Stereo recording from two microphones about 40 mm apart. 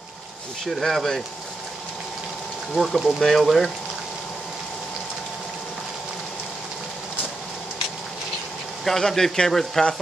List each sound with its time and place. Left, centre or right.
0.7 s speech: centre
2.7 s speech: centre
8.8 s speech: centre